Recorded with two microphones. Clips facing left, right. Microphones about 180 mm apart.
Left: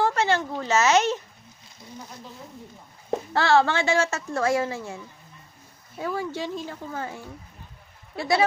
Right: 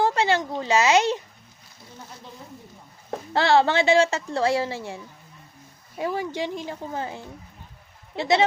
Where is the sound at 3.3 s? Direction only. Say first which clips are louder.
Right 2 dB; 20° right (ahead or behind).